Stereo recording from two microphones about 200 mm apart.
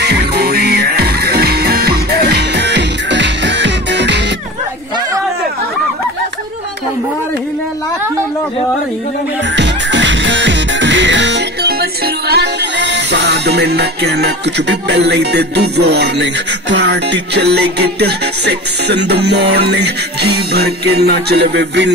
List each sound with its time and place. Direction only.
0.0 s music: 55° right (ahead or behind)
9.6 s music: 60° right (ahead or behind)